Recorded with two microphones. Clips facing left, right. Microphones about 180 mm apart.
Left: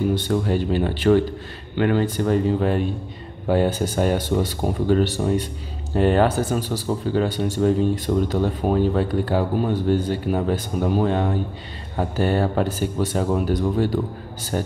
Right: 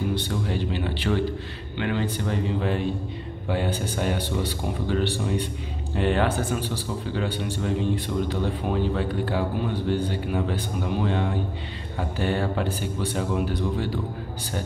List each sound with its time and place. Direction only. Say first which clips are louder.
0.1 s speech: left 6 dB; 45° left (ahead or behind)